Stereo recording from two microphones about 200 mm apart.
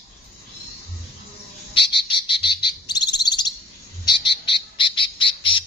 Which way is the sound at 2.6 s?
20° left (ahead or behind).